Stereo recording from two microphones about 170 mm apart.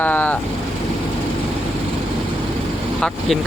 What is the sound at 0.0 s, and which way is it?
Vehicle, 10° left (ahead or behind).